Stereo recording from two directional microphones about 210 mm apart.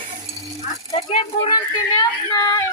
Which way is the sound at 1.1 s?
20° left (ahead or behind).